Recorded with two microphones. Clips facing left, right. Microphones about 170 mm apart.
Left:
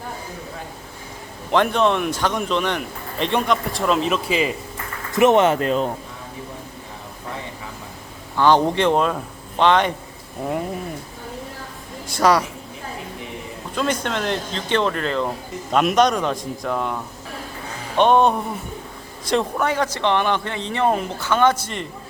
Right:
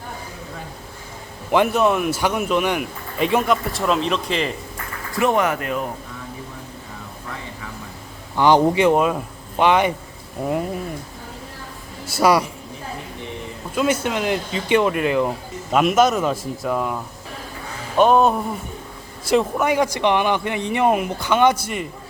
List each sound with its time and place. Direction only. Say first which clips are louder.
1.5 s speech: right 1 dB; 10° right (ahead or behind)
5.1 s speech: left 4 dB; 20° left (ahead or behind)
8.4 s speech: right 1 dB; 10° right (ahead or behind)
12.0 s speech: right 1 dB; 10° right (ahead or behind)
13.7 s a man's voice: right 3 dB; 5° right (ahead or behind)